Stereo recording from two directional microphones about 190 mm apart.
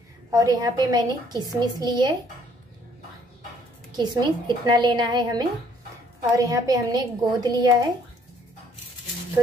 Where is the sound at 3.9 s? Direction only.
20° right (ahead or behind).